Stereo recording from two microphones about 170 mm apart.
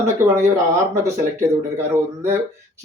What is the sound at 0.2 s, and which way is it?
Speech, 15° right (ahead or behind).